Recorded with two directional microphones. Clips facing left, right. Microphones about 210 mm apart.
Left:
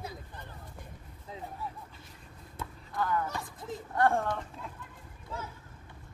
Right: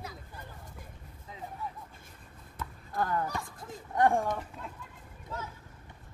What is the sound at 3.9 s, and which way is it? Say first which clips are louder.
Speech: right 1 dB; 15° right (ahead or behind).